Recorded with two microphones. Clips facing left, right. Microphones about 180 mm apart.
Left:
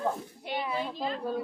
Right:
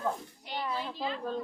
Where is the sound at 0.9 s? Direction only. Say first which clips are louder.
Left 2 dB; 45° left (ahead or behind).